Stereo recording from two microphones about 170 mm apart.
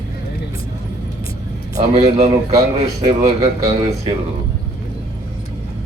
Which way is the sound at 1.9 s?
40° right (ahead or behind).